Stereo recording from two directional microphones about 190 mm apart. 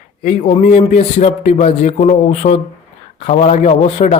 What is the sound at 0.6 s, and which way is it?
A man's voice, 35° left (ahead or behind).